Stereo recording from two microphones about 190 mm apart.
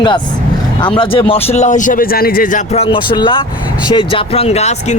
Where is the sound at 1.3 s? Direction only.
40° left (ahead or behind).